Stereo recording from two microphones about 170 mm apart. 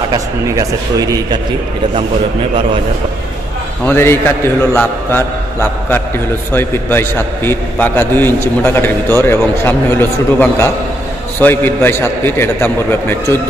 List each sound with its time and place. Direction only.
0.1 s a man's voice: 20° right (ahead or behind)
3.8 s a man's voice: 15° left (ahead or behind)